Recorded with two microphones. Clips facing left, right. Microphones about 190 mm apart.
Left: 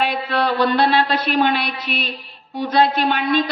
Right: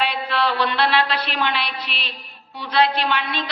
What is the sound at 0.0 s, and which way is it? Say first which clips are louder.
A woman's voice: left 2 dB; 45° left (ahead or behind).